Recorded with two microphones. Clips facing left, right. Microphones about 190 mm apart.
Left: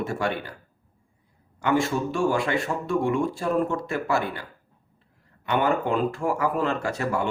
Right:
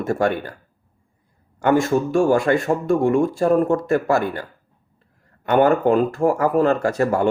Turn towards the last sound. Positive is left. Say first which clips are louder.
# right 8 dB
turn(degrees=-45)  # may be behind; listen again after turning